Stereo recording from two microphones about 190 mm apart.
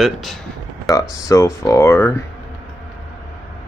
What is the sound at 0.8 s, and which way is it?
Speech, 20° left (ahead or behind).